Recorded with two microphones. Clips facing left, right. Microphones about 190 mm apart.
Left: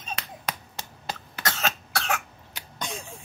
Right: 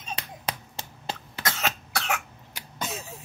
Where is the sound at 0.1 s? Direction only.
30° right (ahead or behind).